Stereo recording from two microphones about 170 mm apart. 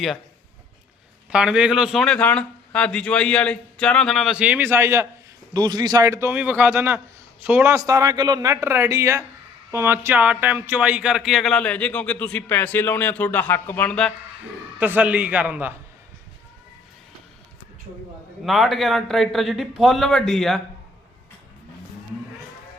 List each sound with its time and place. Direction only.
1.3 s a man's voice: 5° right (ahead or behind)
14.8 s a man's voice: 10° right (ahead or behind)
18.4 s a man's voice: centre (ahead or behind)